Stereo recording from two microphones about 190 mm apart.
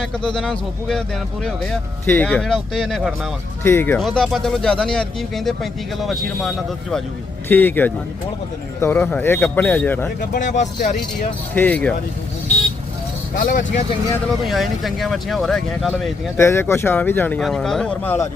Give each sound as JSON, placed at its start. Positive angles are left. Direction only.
{"t": 0.0, "sound": "speech", "side_deg": 0}
{"t": 3.6, "sound": "speech", "side_deg": 10}
{"t": 4.0, "sound": "speech", "side_deg": 0}
{"t": 7.4, "sound": "speech", "side_deg": 10}
{"t": 10.2, "sound": "speech", "side_deg": 45}
{"t": 11.5, "sound": "speech", "side_deg": 10}
{"t": 13.4, "sound": "speech", "side_deg": 45}
{"t": 14.4, "sound": "speech", "side_deg": 0}
{"t": 16.4, "sound": "speech", "side_deg": 15}